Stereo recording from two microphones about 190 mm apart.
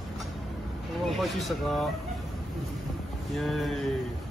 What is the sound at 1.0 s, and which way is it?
Speech, centre (ahead or behind).